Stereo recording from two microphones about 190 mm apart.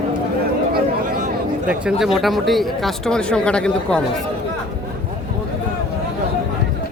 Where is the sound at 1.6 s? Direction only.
5° right (ahead or behind).